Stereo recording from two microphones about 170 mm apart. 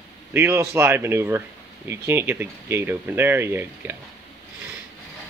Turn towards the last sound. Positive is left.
turn(degrees=-15)  # may be behind; listen again after turning